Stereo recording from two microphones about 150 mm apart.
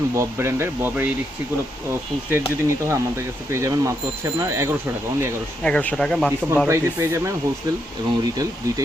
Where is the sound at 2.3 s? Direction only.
20° right (ahead or behind).